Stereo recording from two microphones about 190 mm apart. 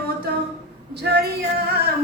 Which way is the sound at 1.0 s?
55° right (ahead or behind).